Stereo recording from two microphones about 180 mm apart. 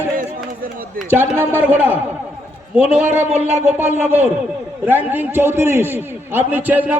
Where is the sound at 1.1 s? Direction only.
10° right (ahead or behind).